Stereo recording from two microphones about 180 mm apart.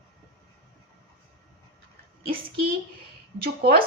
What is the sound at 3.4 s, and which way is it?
Speech, 60° right (ahead or behind).